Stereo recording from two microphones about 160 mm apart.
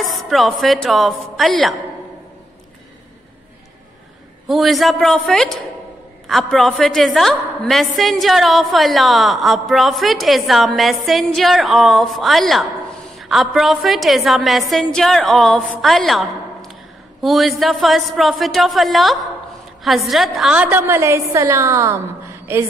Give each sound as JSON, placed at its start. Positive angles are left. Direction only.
{"t": 0.1, "sound": "a woman's voice", "side_deg": 0}
{"t": 4.5, "sound": "a woman's voice", "side_deg": 0}